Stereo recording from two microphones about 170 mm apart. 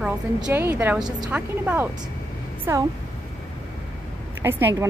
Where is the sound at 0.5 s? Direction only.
10° right (ahead or behind).